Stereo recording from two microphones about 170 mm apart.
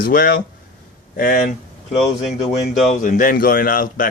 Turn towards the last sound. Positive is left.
turn(degrees=55)  # may be behind; listen again after turning